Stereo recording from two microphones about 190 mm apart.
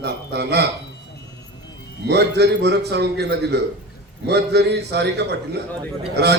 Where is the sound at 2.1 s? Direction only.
60° right (ahead or behind).